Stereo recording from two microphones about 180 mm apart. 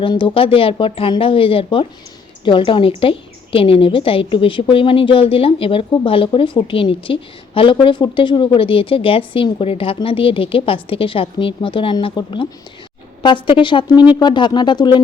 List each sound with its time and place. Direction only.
0.0 s a woman's voice: 25° left (ahead or behind)